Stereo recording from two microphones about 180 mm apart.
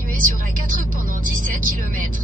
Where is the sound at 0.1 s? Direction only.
50° right (ahead or behind).